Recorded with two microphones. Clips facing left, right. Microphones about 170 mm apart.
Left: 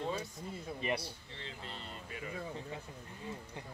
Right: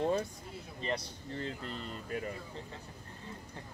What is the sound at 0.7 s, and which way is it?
Speech, 15° left (ahead or behind).